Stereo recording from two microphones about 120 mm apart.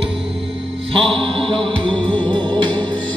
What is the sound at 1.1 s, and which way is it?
Music, 45° right (ahead or behind).